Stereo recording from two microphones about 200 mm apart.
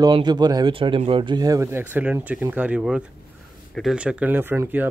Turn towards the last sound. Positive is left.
turn(degrees=-10)  # may be behind; listen again after turning